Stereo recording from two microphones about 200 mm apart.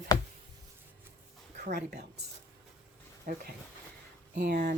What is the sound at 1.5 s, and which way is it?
Speech, 50° right (ahead or behind).